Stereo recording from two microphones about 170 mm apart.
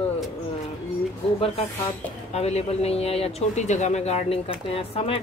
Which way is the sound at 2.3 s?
40° left (ahead or behind).